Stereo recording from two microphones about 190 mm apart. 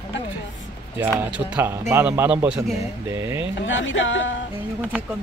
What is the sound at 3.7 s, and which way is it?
Speech, 80° left.